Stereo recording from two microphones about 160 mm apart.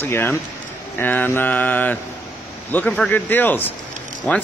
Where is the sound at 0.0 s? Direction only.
15° left (ahead or behind).